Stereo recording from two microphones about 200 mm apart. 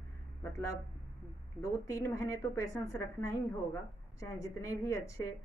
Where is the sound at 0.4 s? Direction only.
15° left (ahead or behind).